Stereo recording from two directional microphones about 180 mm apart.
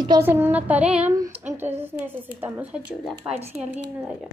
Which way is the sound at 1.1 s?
20° right (ahead or behind).